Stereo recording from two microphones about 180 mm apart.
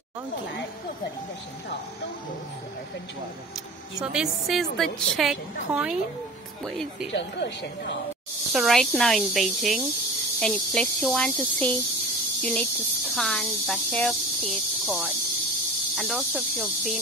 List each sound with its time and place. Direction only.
4.0 s a woman's voice: 5° right (ahead or behind)
7.2 s a woman's voice: 75° left (ahead or behind)
8.5 s a woman's voice: centre (ahead or behind)
16.0 s a woman's voice: 5° right (ahead or behind)